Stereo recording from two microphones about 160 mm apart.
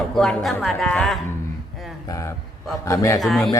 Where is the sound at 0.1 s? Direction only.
Centre (ahead or behind).